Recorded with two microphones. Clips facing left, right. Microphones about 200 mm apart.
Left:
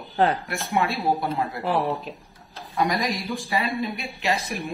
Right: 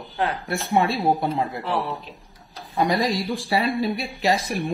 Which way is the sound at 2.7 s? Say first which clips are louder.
Right 3 dB; 30° right (ahead or behind).